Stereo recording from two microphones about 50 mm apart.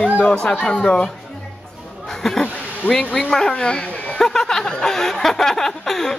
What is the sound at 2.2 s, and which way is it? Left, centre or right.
Speech, centre.